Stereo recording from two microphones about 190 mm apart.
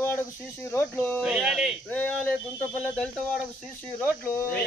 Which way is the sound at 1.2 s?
5° right (ahead or behind).